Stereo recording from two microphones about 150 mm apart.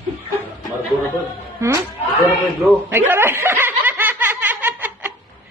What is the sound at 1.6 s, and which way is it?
Speech, 20° right (ahead or behind).